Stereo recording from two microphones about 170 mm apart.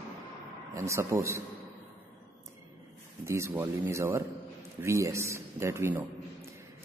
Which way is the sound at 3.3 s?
15° right (ahead or behind).